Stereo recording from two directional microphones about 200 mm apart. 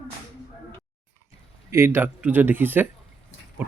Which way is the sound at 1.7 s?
15° right (ahead or behind).